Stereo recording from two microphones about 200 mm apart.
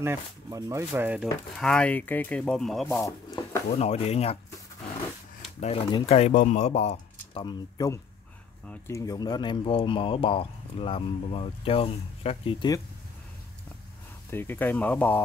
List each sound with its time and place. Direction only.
0.0 s speech: 15° right (ahead or behind); by 3.0 s centre (ahead or behind)
3.7 s speech: 30° left (ahead or behind)
5.6 s speech: 25° left (ahead or behind)
7.4 s speech: 20° left (ahead or behind)
14.3 s speech: 10° left (ahead or behind)